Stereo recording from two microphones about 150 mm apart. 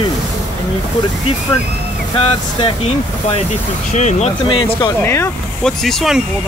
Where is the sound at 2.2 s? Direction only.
35° left (ahead or behind).